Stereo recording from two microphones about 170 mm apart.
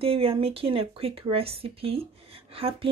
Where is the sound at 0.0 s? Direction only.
35° right (ahead or behind).